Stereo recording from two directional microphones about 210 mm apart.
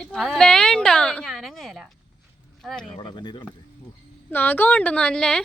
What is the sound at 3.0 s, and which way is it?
Speech, 20° left (ahead or behind).